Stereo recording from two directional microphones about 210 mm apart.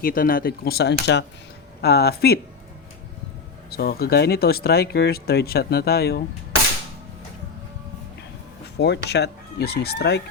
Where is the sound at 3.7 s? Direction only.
50° left (ahead or behind).